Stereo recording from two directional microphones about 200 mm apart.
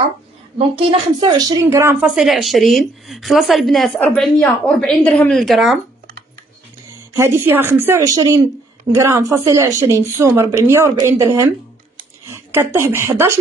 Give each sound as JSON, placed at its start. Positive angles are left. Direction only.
{"t": 0.6, "sound": "a woman's voice", "side_deg": -25}
{"t": 7.2, "sound": "a woman's voice", "side_deg": -10}